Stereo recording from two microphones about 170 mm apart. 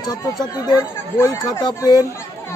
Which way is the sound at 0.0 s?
20° left (ahead or behind).